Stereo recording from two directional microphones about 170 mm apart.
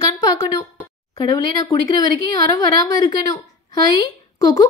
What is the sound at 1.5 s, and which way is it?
A woman's voice, 20° left (ahead or behind).